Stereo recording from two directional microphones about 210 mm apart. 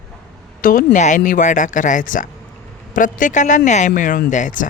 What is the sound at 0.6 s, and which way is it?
Speech, 40° left (ahead or behind).